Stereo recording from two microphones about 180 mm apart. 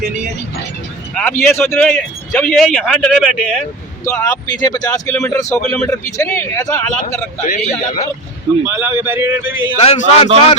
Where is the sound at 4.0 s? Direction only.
15° left (ahead or behind).